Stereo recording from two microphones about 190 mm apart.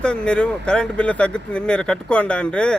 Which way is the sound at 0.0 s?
5° left (ahead or behind).